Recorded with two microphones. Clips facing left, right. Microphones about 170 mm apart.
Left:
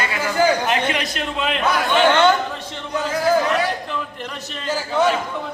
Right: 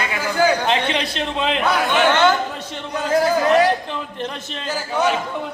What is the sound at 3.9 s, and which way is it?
Speech, 25° right (ahead or behind).